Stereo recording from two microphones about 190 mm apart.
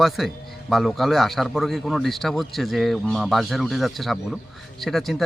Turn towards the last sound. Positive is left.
turn(degrees=0)  # may be behind; listen again after turning